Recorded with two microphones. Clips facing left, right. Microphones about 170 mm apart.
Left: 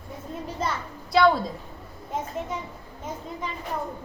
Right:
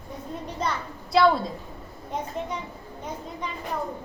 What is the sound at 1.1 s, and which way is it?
Speech, centre (ahead or behind).